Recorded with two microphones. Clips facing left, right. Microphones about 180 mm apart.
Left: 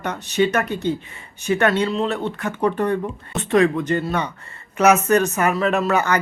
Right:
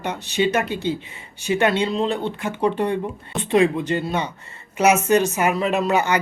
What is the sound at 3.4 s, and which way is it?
Speech, 10° right (ahead or behind).